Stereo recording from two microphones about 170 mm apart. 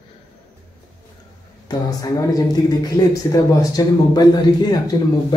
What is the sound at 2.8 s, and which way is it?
Speech, 20° left (ahead or behind).